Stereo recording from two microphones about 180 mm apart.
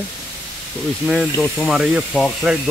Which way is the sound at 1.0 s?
Centre (ahead or behind).